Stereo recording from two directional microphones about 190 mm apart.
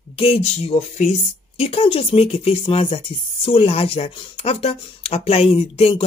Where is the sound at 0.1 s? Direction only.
30° left (ahead or behind).